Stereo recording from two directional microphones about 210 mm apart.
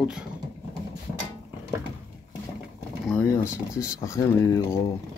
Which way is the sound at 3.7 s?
15° left (ahead or behind).